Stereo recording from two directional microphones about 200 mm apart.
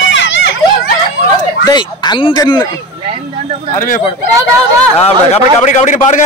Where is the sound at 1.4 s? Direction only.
20° left (ahead or behind).